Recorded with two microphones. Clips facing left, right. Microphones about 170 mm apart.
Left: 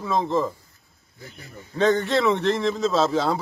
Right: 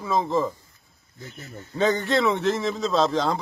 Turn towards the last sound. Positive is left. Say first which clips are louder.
# left 1 dB
turn(degrees=5)  # may be behind; listen again after turning